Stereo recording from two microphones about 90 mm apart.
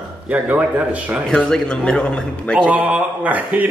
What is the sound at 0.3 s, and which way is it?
Speech, 15° right (ahead or behind).